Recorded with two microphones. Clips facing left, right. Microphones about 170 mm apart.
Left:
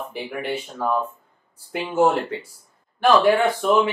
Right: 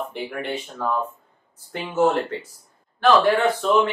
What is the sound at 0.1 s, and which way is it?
Speech, 5° left (ahead or behind).